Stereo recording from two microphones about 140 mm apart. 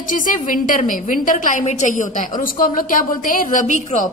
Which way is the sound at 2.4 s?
80° left.